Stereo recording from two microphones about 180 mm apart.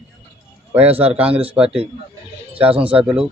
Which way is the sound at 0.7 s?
10° right (ahead or behind).